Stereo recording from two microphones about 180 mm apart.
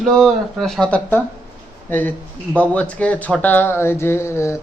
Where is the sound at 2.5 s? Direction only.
10° left (ahead or behind).